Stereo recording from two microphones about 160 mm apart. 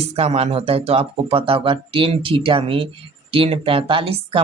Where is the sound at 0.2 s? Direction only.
40° right (ahead or behind).